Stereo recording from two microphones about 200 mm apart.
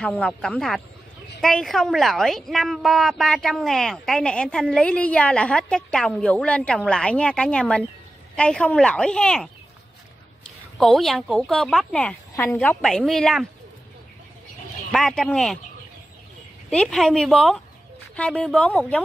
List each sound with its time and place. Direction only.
0.0 s a woman's voice: 5° left (ahead or behind)
10.8 s a woman's voice: centre (ahead or behind)
14.9 s a woman's voice: centre (ahead or behind)
16.7 s a woman's voice: 5° left (ahead or behind)